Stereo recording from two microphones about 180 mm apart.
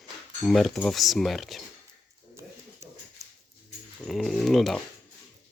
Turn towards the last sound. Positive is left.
turn(degrees=0)  # may be behind; listen again after turning